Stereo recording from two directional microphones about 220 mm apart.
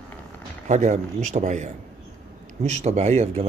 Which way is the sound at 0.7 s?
35° right (ahead or behind).